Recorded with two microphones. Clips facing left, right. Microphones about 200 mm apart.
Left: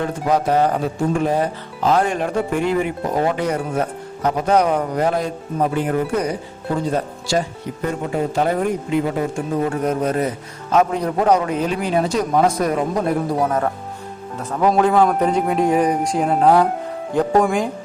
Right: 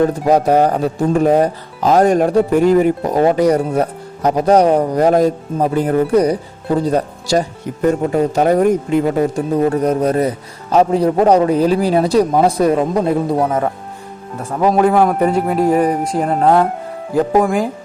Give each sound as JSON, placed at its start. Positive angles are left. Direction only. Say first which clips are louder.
{"t": 0.0, "sound": "speech", "louder": "right 6 dB", "side_deg": -40}
{"t": 13.4, "sound": "a man's voice", "louder": "right 3 dB", "side_deg": -5}